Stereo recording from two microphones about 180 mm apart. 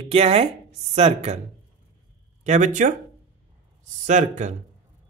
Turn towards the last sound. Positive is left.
turn(degrees=-40)  # may be behind; listen again after turning